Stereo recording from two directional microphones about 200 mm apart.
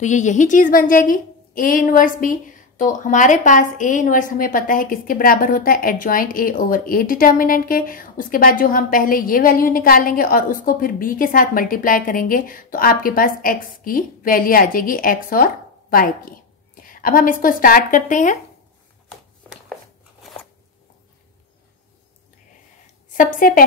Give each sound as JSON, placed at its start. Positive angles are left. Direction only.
{"t": 0.0, "sound": "a woman's voice", "side_deg": 35}
{"t": 23.1, "sound": "a woman's voice", "side_deg": 45}